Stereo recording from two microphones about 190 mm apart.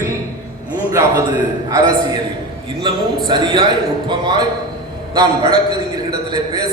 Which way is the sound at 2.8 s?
25° right (ahead or behind).